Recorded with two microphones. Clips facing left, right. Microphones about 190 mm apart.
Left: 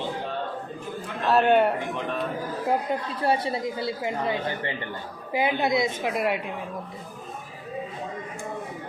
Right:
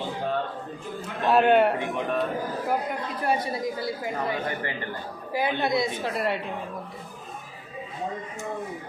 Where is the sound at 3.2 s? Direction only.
25° left (ahead or behind).